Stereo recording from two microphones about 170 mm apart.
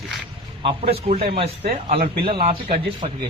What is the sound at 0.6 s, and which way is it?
Speech, 35° right (ahead or behind).